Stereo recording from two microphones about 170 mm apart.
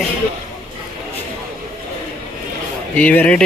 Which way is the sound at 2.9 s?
10° left (ahead or behind).